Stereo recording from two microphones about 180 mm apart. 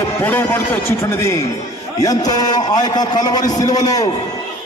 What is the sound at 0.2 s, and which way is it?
A man's voice, 10° left (ahead or behind).